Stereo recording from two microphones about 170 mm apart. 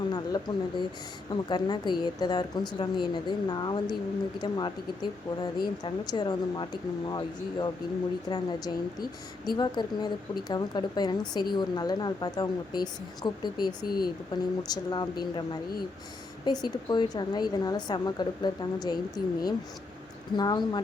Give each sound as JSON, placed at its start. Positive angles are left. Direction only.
{"t": 0.1, "sound": "a woman's voice", "side_deg": 25}
{"t": 16.4, "sound": "a woman's voice", "side_deg": 25}